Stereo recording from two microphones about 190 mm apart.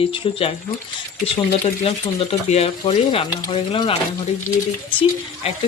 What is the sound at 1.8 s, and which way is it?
Speech, 30° left (ahead or behind).